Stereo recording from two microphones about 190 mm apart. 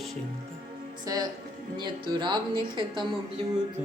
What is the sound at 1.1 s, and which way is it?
Speech, 20° right (ahead or behind).